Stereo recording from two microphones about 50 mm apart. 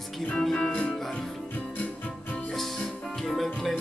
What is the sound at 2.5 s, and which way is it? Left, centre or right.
Music, centre.